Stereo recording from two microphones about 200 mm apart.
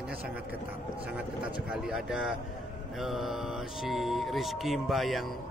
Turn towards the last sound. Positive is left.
turn(degrees=0)  # may be behind; listen again after turning